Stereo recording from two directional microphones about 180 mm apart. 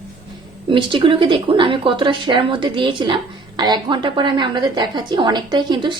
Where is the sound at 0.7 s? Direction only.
30° right (ahead or behind).